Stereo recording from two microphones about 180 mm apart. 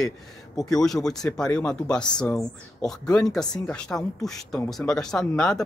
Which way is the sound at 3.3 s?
5° left (ahead or behind).